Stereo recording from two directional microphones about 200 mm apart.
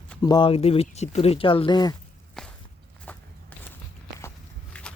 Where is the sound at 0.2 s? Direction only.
20° left (ahead or behind).